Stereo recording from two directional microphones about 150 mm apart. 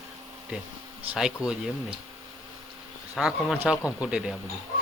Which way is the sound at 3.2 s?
5° right (ahead or behind).